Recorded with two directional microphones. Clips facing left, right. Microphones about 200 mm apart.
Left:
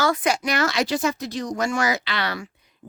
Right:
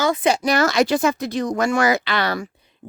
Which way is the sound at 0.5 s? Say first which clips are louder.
Right 5 dB; 45° right (ahead or behind).